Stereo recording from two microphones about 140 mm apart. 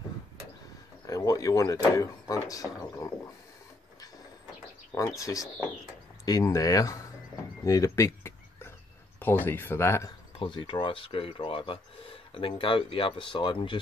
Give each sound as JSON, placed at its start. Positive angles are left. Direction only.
{"t": 1.0, "sound": "speech", "side_deg": 25}
{"t": 4.9, "sound": "speech", "side_deg": 25}
{"t": 7.6, "sound": "a sound", "side_deg": 20}
{"t": 9.2, "sound": "speech", "side_deg": 15}
{"t": 10.4, "sound": "speech", "side_deg": 35}